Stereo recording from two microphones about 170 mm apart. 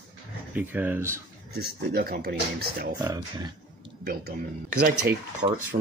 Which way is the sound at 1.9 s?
60° right (ahead or behind).